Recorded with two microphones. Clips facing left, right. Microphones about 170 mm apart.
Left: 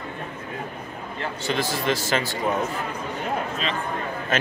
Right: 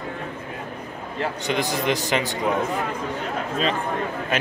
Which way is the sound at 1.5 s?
15° right (ahead or behind).